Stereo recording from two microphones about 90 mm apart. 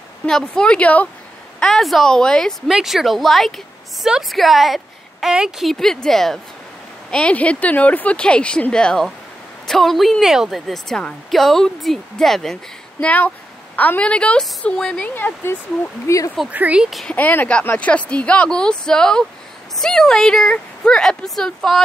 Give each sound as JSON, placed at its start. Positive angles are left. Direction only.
{"t": 0.3, "sound": "speech", "side_deg": 5}
{"t": 1.6, "sound": "speech", "side_deg": 5}
{"t": 2.7, "sound": "a woman's voice", "side_deg": -5}
{"t": 13.0, "sound": "speech", "side_deg": 15}
{"t": 16.1, "sound": "speech", "side_deg": 30}
{"t": 16.5, "sound": "speech", "side_deg": -15}
{"t": 17.1, "sound": "speech", "side_deg": 20}